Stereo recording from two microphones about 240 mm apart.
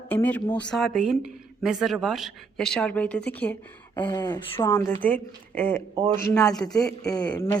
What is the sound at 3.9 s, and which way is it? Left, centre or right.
A woman's voice, centre.